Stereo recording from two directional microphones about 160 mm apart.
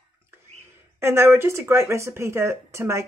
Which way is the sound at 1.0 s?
15° right (ahead or behind).